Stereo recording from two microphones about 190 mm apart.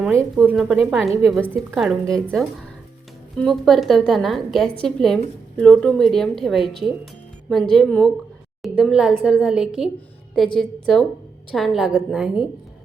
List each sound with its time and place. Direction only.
0.2 s speech: 15° right (ahead or behind)
0.5 s a woman's voice: centre (ahead or behind)